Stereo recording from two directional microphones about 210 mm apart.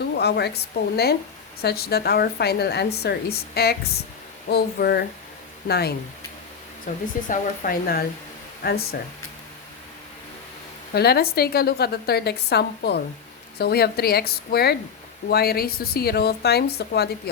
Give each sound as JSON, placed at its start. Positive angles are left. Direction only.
{"t": 0.2, "sound": "a woman's voice", "side_deg": 50}
{"t": 7.3, "sound": "a woman's voice", "side_deg": 45}
{"t": 10.9, "sound": "a woman's voice", "side_deg": 50}